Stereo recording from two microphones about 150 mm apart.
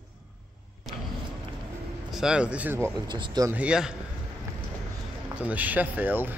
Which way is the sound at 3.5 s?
10° right (ahead or behind).